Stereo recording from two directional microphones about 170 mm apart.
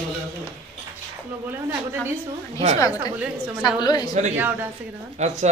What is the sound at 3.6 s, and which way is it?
Speech, 25° left (ahead or behind).